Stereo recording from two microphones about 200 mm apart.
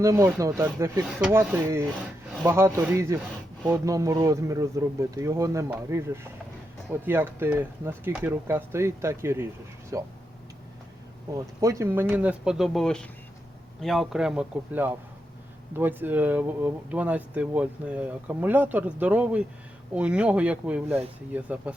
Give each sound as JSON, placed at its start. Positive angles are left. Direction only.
{"t": 0.0, "sound": "speech", "side_deg": -15}
{"t": 11.3, "sound": "speech", "side_deg": -15}